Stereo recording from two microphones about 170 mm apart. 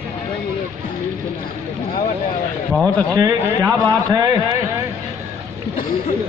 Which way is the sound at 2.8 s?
20° right (ahead or behind).